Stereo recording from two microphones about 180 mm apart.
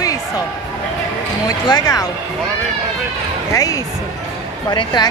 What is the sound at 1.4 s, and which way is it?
Speech, 20° left (ahead or behind).